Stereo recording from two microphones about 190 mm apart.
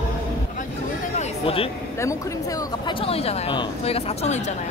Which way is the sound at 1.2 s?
30° left (ahead or behind).